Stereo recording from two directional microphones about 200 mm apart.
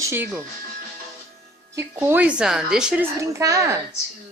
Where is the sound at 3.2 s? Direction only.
15° right (ahead or behind).